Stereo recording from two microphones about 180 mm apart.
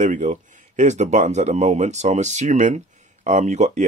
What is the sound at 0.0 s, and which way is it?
A man's voice, 40° right (ahead or behind).